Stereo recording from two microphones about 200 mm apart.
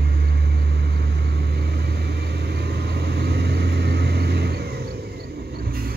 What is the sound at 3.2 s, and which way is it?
Vehicle, 55° right (ahead or behind).